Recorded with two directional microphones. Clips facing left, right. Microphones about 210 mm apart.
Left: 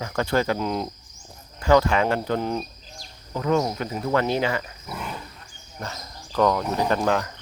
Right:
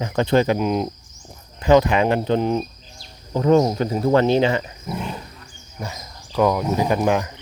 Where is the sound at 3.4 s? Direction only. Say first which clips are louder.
Right 7 dB; 35° right (ahead or behind).